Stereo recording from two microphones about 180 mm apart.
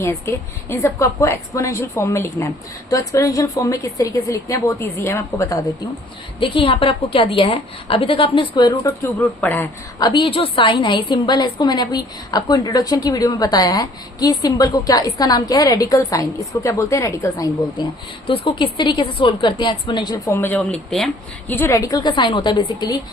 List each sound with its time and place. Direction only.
0.0 s a woman's voice: 15° left (ahead or behind)
6.4 s a woman's voice: 30° left (ahead or behind)
9.4 s a woman's voice: 10° left (ahead or behind)
10.0 s a woman's voice: 25° left (ahead or behind)
20.3 s a woman's voice: 10° left (ahead or behind)